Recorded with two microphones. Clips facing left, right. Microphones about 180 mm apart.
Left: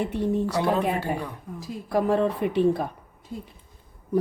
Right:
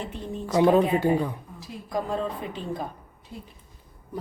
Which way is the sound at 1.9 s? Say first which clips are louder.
Left 6 dB; 70° left (ahead or behind).